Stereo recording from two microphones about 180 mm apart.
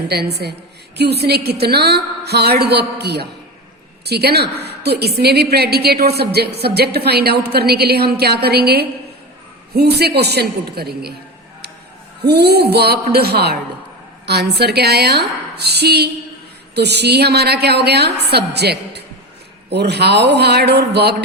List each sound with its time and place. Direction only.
0.1 s a woman's voice: 65° right (ahead or behind)
12.2 s a woman's voice: 65° right (ahead or behind)